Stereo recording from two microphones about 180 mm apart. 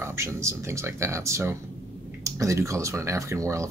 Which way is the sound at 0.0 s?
15° right (ahead or behind).